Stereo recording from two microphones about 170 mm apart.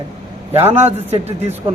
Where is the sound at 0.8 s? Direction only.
40° right (ahead or behind).